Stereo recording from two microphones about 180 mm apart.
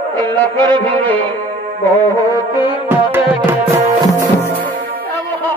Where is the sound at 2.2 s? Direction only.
20° left (ahead or behind).